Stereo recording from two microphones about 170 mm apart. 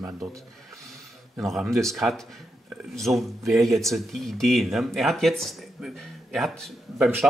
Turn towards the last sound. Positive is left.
turn(degrees=0)  # may be behind; listen again after turning